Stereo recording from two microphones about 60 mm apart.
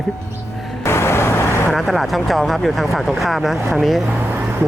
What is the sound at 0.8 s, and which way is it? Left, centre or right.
Vehicle, left.